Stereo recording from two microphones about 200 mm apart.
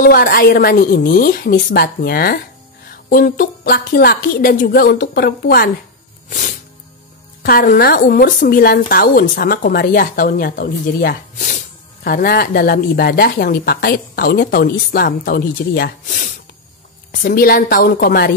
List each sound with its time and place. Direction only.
0.0 s a woman's voice: 50° left (ahead or behind)
7.4 s a woman's voice: 45° left (ahead or behind)